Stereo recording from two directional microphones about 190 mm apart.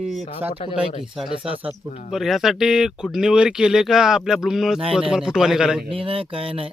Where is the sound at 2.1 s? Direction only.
Centre (ahead or behind).